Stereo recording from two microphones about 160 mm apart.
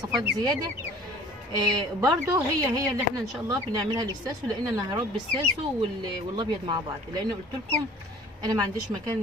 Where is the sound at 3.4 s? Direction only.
25° right (ahead or behind).